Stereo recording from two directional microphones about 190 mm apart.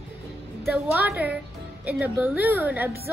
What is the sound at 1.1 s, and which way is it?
A woman's voice, 10° right (ahead or behind).